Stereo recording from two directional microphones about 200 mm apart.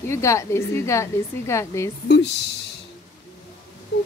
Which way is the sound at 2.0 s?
60° left (ahead or behind).